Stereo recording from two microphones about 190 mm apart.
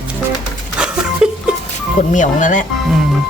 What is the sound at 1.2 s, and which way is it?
Goat, 5° right (ahead or behind).